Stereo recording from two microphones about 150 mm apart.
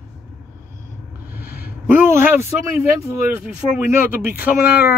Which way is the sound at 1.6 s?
15° right (ahead or behind).